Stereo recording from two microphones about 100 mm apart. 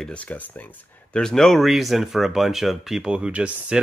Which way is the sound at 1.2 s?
5° left (ahead or behind).